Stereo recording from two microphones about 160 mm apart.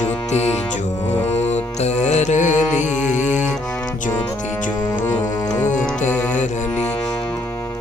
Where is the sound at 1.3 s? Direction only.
45° left (ahead or behind).